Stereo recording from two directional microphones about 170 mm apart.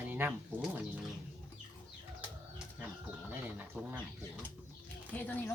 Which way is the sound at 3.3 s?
10° right (ahead or behind).